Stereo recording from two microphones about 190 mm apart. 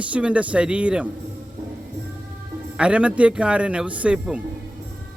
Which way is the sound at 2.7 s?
5° right (ahead or behind).